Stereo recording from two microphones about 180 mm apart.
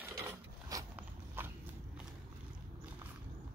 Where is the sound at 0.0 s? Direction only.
15° right (ahead or behind).